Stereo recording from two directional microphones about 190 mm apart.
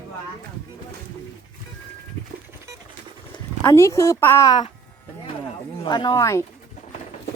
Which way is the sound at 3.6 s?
15° left (ahead or behind).